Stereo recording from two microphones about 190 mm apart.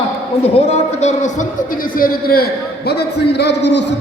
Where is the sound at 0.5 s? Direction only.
35° left (ahead or behind).